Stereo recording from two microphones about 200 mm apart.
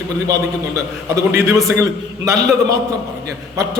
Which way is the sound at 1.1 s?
15° right (ahead or behind).